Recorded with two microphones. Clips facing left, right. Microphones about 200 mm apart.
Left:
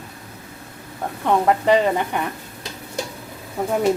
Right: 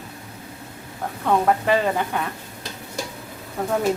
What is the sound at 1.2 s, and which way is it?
Speech, 15° left (ahead or behind).